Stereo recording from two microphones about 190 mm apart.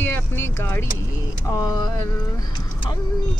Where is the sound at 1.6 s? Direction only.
20° left (ahead or behind).